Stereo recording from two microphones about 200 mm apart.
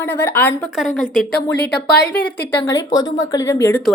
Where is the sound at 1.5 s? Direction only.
55° left (ahead or behind).